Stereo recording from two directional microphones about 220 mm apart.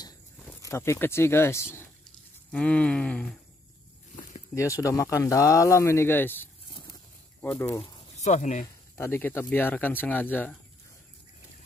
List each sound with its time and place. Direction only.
0.6 s speech: 15° left (ahead or behind)
2.5 s a sound: 5° left (ahead or behind)
4.1 s a sound: 35° left (ahead or behind)
4.6 s speech: 15° left (ahead or behind)
7.6 s speech: 15° left (ahead or behind)
8.2 s speech: 30° left (ahead or behind)
8.9 s speech: 10° left (ahead or behind)